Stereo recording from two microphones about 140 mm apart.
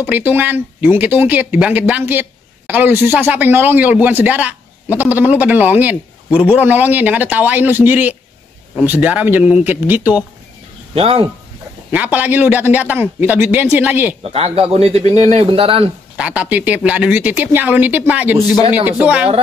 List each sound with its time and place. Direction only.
0.0 s speech: 15° right (ahead or behind)
11.0 s a man's voice: 45° right (ahead or behind)
11.9 s speech: 10° right (ahead or behind)
14.2 s a man's voice: 45° right (ahead or behind)
16.2 s speech: 10° right (ahead or behind)